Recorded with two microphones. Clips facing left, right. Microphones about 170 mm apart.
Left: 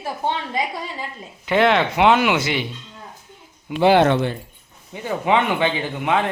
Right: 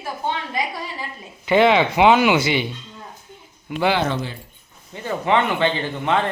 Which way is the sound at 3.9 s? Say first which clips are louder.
Left 7 dB; 65° left (ahead or behind).